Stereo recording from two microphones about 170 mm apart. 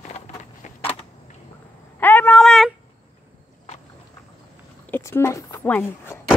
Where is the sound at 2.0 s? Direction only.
10° left (ahead or behind).